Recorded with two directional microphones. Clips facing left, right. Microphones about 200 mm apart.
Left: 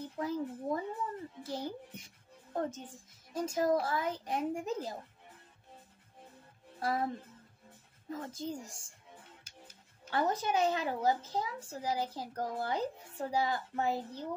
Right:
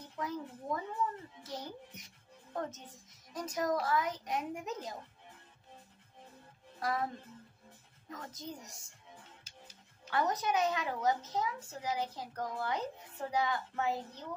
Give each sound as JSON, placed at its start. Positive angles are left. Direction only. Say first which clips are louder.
{"t": 0.2, "sound": "a sound", "louder": "left 4 dB", "side_deg": 30}
{"t": 1.4, "sound": "a woman's voice", "louder": "left 5 dB", "side_deg": 30}
{"t": 6.8, "sound": "speech", "louder": "left 2 dB", "side_deg": 30}
{"t": 8.1, "sound": "speech", "louder": "left 6 dB", "side_deg": 30}
{"t": 10.0, "sound": "a child's voice", "louder": "left 1 dB", "side_deg": 30}